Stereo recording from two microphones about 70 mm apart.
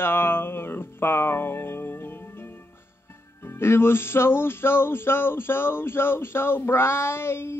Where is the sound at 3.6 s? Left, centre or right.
Left.